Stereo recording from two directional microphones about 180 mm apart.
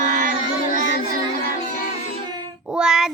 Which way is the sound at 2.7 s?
5° right (ahead or behind).